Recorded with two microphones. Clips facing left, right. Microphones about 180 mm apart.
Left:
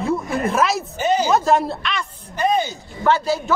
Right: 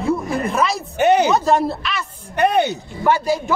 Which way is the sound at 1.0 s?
65° right (ahead or behind).